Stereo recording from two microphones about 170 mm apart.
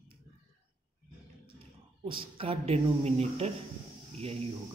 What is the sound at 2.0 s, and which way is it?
Speech, 30° right (ahead or behind).